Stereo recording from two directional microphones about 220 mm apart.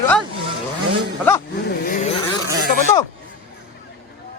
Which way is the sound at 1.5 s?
45° left (ahead or behind).